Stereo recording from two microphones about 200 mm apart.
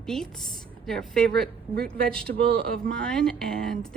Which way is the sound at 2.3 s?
50° right (ahead or behind).